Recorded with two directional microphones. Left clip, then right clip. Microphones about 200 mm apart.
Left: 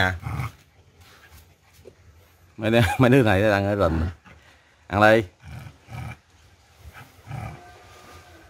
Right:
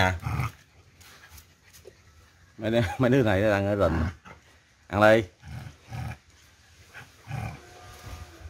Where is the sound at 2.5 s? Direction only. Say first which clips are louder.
Left 6 dB; 30° left (ahead or behind).